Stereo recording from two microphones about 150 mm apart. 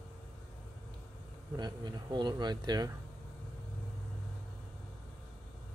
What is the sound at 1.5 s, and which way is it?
Speech, 30° right (ahead or behind).